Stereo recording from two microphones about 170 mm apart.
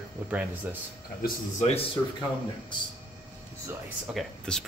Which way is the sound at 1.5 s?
40° left (ahead or behind).